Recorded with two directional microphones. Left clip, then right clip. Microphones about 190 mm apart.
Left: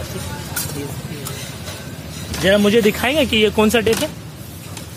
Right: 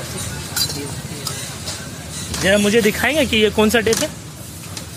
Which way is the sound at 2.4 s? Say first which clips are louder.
Left 1 dB; 20° left (ahead or behind).